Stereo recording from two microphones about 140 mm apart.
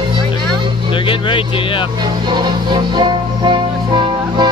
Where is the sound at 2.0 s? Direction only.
30° right (ahead or behind).